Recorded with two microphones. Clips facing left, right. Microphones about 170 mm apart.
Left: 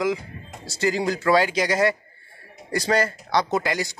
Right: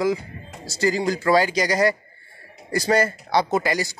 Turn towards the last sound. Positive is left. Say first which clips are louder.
# right 2 dB
turn(degrees=-5)  # may be behind; listen again after turning